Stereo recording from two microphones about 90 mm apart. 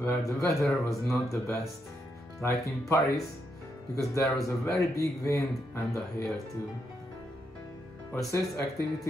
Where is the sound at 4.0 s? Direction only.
35° left (ahead or behind).